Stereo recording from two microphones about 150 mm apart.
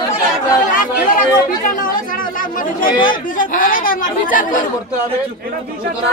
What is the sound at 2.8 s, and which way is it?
Speech, 65° left (ahead or behind).